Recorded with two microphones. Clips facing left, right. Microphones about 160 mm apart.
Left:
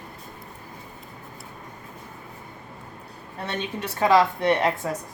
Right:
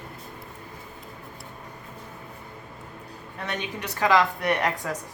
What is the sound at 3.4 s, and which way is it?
A woman's voice, 25° left (ahead or behind).